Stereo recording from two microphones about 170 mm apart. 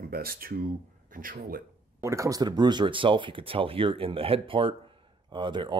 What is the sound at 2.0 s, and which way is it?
A man's voice, 15° right (ahead or behind).